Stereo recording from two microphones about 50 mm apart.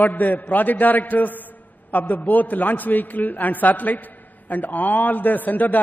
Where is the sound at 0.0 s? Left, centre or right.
Left.